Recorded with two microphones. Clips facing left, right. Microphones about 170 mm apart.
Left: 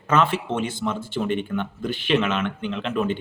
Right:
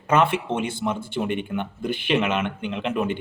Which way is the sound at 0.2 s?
60° right (ahead or behind).